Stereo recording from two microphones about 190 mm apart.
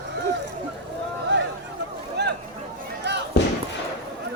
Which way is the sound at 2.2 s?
60° right (ahead or behind).